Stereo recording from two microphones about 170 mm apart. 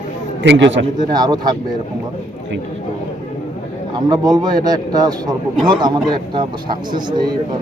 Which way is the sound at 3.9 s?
25° right (ahead or behind).